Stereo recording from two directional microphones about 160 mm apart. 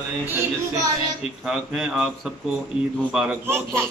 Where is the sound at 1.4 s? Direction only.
5° right (ahead or behind).